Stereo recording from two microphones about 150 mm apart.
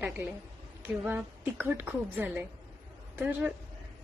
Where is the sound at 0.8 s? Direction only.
5° right (ahead or behind).